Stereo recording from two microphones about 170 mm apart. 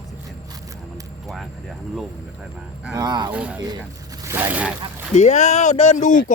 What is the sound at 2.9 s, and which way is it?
Speech, 25° right (ahead or behind).